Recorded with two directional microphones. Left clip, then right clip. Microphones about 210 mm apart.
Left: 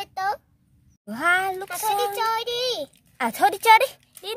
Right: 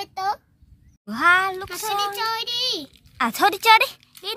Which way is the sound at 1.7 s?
30° left (ahead or behind).